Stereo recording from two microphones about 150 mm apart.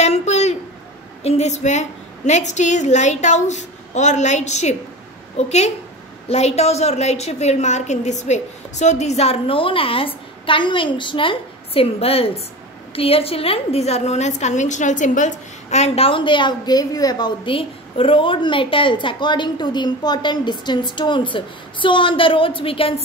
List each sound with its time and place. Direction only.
0.0 s a sound: 50° left (ahead or behind)
1.2 s a woman's voice: 45° left (ahead or behind)
6.2 s a woman's voice: 45° left (ahead or behind)